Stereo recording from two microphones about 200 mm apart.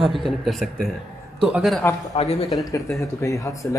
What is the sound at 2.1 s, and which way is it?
Speech, 30° left (ahead or behind).